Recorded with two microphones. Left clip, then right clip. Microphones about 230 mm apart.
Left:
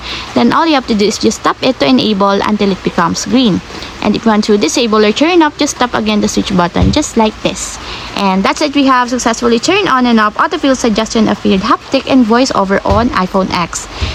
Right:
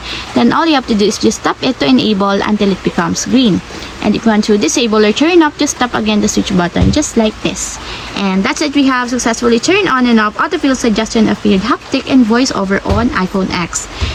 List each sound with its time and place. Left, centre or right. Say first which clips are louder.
0.3 s a woman's voice: left 1 dB; left